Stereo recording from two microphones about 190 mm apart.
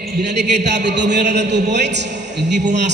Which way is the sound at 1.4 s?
65° right (ahead or behind).